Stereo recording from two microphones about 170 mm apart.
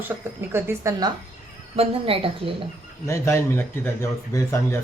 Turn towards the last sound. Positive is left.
turn(degrees=15)  # may be behind; listen again after turning